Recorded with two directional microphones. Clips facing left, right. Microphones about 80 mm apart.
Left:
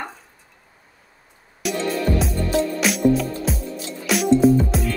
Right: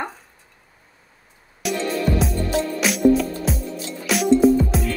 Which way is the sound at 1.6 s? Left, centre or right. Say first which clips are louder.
Even; centre.